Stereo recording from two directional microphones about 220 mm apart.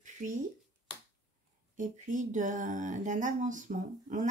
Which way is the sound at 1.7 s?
35° right (ahead or behind).